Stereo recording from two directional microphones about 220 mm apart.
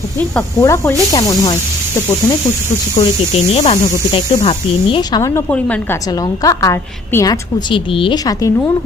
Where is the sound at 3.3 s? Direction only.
30° left (ahead or behind).